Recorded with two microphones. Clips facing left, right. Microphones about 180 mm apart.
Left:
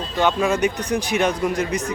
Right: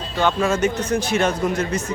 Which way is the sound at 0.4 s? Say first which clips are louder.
Even; 15° left (ahead or behind).